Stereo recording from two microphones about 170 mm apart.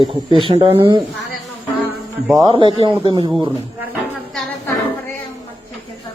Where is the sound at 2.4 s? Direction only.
25° right (ahead or behind).